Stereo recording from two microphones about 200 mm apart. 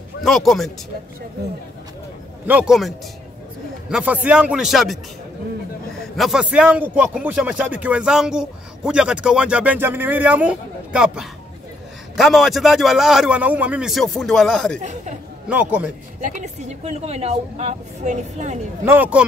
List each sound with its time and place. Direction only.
0.2 s a man's voice: centre (ahead or behind)
2.4 s a man's voice: 5° right (ahead or behind)
3.9 s a man's voice: 5° right (ahead or behind)
6.1 s a man's voice: centre (ahead or behind)
14.8 s a woman's voice: 35° right (ahead or behind)
15.4 s a man's voice: 5° right (ahead or behind)
16.2 s a woman's voice: 40° right (ahead or behind)
18.9 s a man's voice: 10° right (ahead or behind)